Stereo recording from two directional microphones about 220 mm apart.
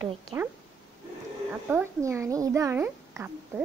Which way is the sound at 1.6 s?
10° right (ahead or behind).